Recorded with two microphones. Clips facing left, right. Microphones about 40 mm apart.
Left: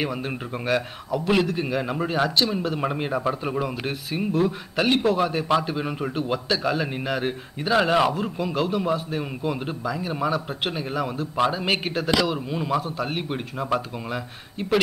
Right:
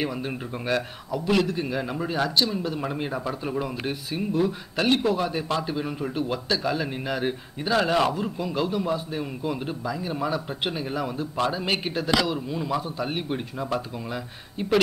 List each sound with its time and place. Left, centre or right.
0.0 s a man's voice: centre
12.8 s a man's voice: centre
13.3 s a man's voice: centre